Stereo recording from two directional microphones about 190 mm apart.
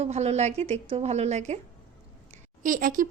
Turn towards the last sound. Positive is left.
turn(degrees=-45)  # may be behind; listen again after turning